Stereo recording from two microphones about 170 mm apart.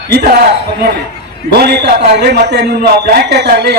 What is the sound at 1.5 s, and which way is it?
Speech, 70° right (ahead or behind).